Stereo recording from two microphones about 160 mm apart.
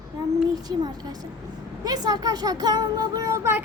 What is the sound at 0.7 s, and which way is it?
Speech, 25° right (ahead or behind).